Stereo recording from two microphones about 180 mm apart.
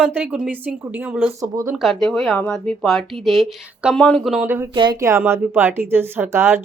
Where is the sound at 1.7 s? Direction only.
Centre (ahead or behind).